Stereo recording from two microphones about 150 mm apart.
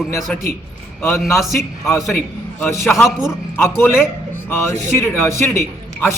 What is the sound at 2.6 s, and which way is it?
A man's voice, 20° left (ahead or behind).